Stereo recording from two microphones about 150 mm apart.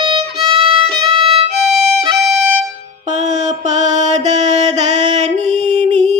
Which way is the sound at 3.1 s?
50° right (ahead or behind).